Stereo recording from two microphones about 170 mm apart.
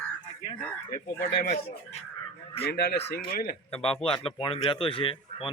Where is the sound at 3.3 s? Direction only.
60° left (ahead or behind).